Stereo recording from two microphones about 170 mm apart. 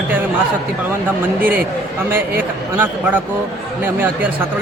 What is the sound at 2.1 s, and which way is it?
Speech, 10° right (ahead or behind).